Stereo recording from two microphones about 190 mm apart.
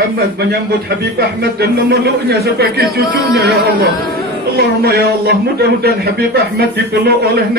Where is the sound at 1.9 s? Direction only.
55° right (ahead or behind).